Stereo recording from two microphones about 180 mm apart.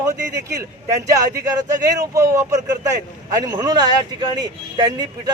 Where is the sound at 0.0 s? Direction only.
20° right (ahead or behind).